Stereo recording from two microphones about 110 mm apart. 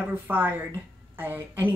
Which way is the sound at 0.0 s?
20° right (ahead or behind).